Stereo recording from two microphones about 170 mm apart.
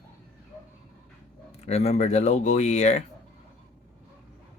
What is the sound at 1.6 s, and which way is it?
Speech, 40° left (ahead or behind).